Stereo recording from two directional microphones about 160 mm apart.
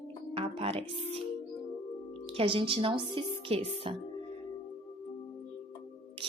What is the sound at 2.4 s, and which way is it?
Speech, 35° right (ahead or behind).